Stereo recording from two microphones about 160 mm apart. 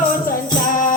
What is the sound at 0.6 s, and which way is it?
Music, 55° left (ahead or behind).